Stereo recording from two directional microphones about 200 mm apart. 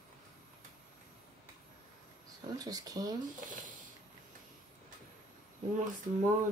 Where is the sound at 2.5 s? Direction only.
20° right (ahead or behind).